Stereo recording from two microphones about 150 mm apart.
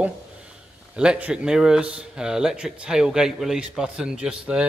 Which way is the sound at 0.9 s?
5° right (ahead or behind).